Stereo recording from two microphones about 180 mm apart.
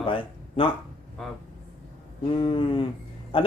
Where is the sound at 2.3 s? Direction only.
30° left (ahead or behind).